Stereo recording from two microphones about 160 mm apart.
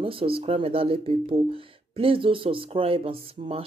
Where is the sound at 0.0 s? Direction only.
35° right (ahead or behind).